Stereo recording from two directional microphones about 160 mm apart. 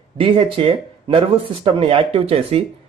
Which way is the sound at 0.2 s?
35° right (ahead or behind).